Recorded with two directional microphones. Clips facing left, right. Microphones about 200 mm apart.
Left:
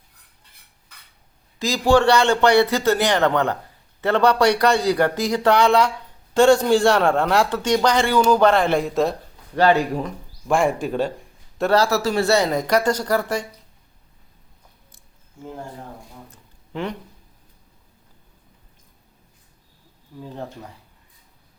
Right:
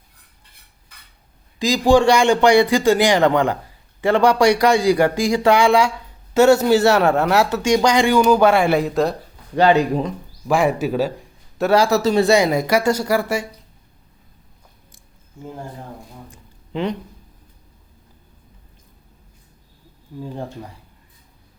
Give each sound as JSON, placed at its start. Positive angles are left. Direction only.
{"t": 1.5, "sound": "speech", "side_deg": -15}
{"t": 9.6, "sound": "speech", "side_deg": -20}
{"t": 10.5, "sound": "speech", "side_deg": 0}
{"t": 16.7, "sound": "speech", "side_deg": -20}
{"t": 20.2, "sound": "speech", "side_deg": -10}